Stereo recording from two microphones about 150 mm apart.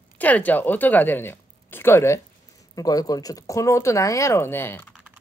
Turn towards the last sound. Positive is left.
turn(degrees=15)  # may be behind; listen again after turning